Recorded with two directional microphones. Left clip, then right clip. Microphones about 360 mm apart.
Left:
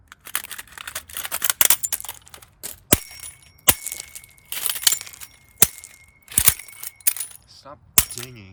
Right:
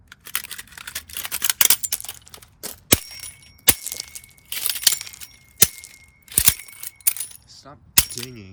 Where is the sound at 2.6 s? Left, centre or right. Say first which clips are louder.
Right 2 dB; centre.